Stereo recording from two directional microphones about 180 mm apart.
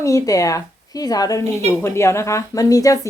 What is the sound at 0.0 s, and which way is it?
A woman's voice, 20° left (ahead or behind).